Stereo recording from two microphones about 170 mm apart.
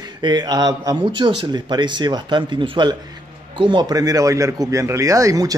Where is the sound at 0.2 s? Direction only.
25° right (ahead or behind).